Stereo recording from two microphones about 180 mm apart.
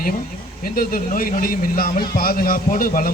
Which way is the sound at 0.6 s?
55° left (ahead or behind).